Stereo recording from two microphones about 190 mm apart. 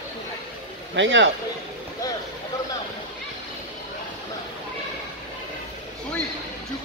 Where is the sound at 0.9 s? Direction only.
85° right.